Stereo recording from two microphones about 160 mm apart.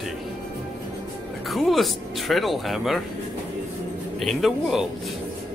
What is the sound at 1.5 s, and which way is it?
Speech, centre (ahead or behind).